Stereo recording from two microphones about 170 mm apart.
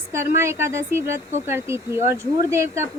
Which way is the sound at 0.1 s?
15° right (ahead or behind).